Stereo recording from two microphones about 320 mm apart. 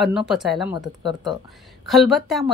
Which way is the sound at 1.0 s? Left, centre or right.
Centre.